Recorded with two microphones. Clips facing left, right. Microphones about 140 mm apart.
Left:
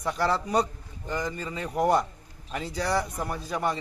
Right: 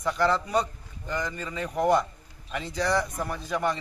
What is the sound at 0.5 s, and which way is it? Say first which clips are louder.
Speech: left 1 dB; 35° left (ahead or behind).